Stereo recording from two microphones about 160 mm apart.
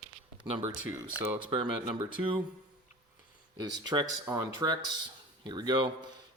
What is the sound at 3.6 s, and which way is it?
Speech, 25° right (ahead or behind).